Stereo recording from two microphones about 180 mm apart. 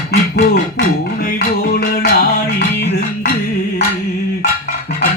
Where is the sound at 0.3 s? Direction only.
45° left (ahead or behind); by 2.6 s 65° left (ahead or behind).